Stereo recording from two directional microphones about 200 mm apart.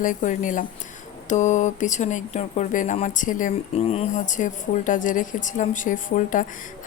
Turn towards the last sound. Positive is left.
turn(degrees=40)  # may be behind; listen again after turning